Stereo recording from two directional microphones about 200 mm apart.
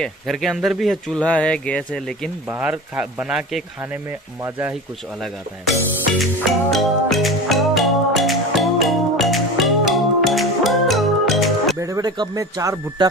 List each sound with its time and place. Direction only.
0.0 s speech: centre (ahead or behind)
2.6 s speech: 5° right (ahead or behind)
6.7 s music: centre (ahead or behind)
11.8 s speech: 15° right (ahead or behind)